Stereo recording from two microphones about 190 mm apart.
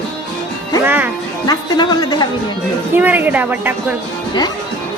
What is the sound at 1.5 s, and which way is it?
Speech, 20° left (ahead or behind).